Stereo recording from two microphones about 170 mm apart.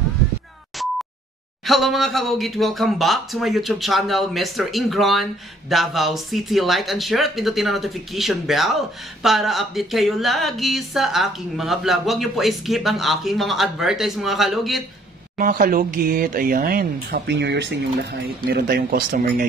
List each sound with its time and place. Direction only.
1.7 s speech: centre (ahead or behind)
15.3 s speech: 55° right (ahead or behind)